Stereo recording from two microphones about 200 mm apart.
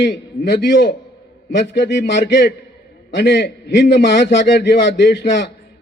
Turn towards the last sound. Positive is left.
turn(degrees=60)  # may be behind; listen again after turning